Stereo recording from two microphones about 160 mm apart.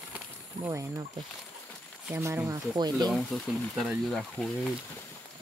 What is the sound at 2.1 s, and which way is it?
Speech, 15° right (ahead or behind).